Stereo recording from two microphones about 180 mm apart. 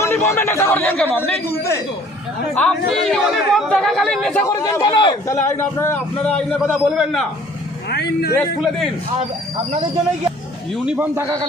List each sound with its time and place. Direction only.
0.0 s a man's voice: 15° left (ahead or behind)
2.6 s speech: 5° left (ahead or behind)
4.4 s a man's voice: 20° left (ahead or behind)
6.6 s speech: 5° right (ahead or behind)
7.9 s speech: 65° left (ahead or behind)
10.8 s a man's voice: 10° right (ahead or behind)